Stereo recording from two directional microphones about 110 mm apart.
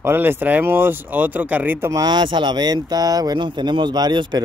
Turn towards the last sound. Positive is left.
turn(degrees=-40)  # may be behind; listen again after turning